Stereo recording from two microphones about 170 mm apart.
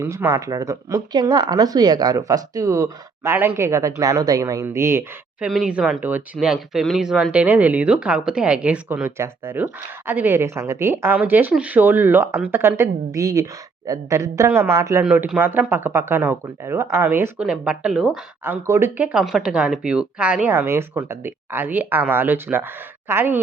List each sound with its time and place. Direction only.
0.0 s speech: 15° right (ahead or behind)
5.5 s a woman's voice: 5° right (ahead or behind)
18.4 s a woman's voice: 15° right (ahead or behind)